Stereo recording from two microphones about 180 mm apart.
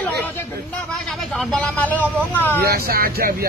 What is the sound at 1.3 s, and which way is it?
Speech, 5° left (ahead or behind).